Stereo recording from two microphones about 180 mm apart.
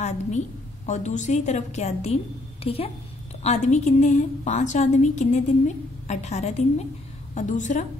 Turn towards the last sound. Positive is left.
turn(degrees=45)  # may be behind; listen again after turning